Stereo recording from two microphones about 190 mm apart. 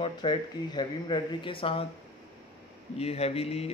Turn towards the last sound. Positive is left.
turn(degrees=30)  # may be behind; listen again after turning